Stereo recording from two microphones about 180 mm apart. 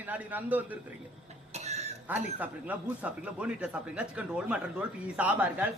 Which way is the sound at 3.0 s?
5° right (ahead or behind).